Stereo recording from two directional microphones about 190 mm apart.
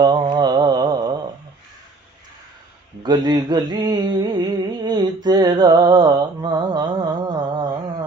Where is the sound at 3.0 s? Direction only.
20° right (ahead or behind).